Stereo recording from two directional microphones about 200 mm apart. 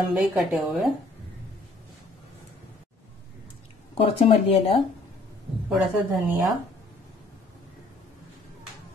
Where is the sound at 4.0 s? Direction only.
30° left (ahead or behind).